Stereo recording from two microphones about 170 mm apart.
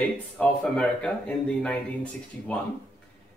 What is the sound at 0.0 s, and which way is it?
Speech, 10° left (ahead or behind).